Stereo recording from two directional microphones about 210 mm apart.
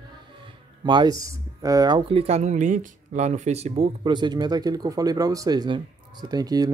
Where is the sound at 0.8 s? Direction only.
20° right (ahead or behind).